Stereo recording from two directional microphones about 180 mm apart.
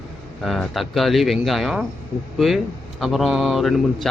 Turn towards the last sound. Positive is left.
turn(degrees=0)  # may be behind; listen again after turning